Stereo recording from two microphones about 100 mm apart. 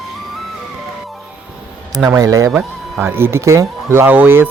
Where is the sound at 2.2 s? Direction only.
35° right (ahead or behind).